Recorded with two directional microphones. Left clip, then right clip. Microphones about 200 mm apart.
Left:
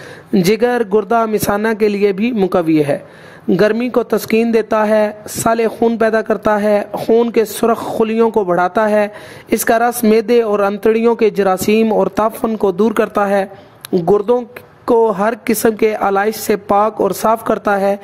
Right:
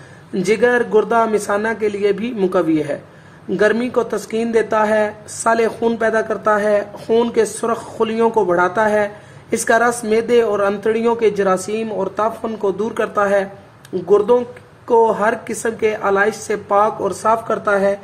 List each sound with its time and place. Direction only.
0.4 s speech: 45° left (ahead or behind)
7.1 s speech: 30° left (ahead or behind); by 17.9 s 50° left (ahead or behind)